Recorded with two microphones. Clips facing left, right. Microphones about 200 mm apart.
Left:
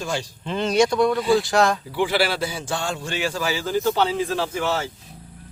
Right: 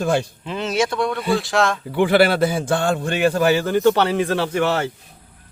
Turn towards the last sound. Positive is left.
turn(degrees=-60)  # may be behind; listen again after turning